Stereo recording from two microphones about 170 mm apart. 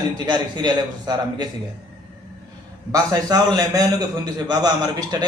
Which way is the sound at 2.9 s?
20° right (ahead or behind).